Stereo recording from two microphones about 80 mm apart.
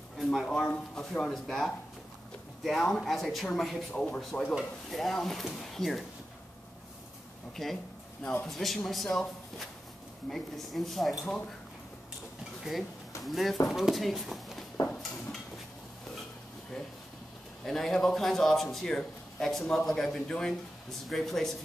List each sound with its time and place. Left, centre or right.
0.2 s a man's voice: centre
3.9 s speech: centre
4.6 s a man's voice: centre
7.6 s a man's voice: centre
8.5 s a man's voice: centre
13.2 s a man's voice: centre
14.8 s dishes: left
17.6 s a man's voice: centre